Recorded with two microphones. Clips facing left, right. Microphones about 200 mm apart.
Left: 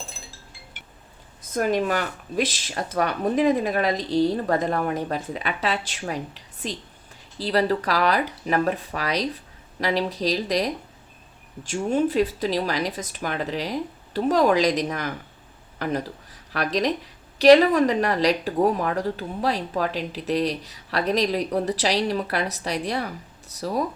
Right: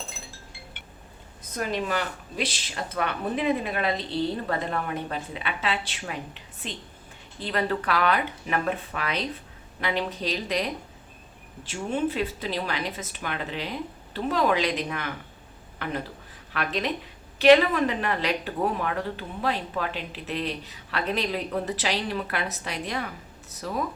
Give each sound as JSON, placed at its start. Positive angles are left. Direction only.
{"t": 1.5, "sound": "speech", "side_deg": 45}